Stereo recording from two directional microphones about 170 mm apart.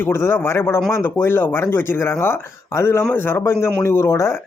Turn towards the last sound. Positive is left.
turn(degrees=15)  # may be behind; listen again after turning